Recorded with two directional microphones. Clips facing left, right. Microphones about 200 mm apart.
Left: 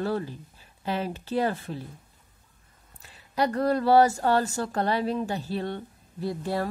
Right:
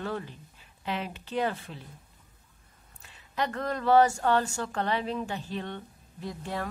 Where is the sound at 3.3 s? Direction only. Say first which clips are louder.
Left 7 dB; 35° left (ahead or behind).